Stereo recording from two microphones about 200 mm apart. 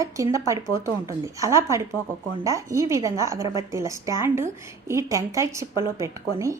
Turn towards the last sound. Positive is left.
turn(degrees=-15)  # may be behind; listen again after turning